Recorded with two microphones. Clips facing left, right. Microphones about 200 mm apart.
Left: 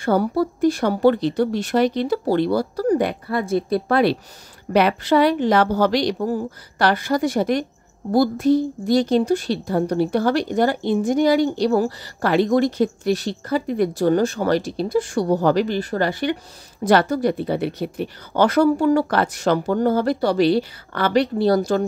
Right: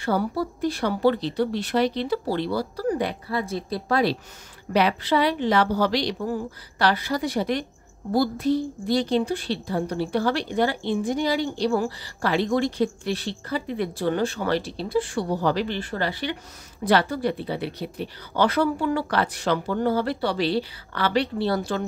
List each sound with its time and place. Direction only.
0.0 s a woman's voice: 50° left (ahead or behind)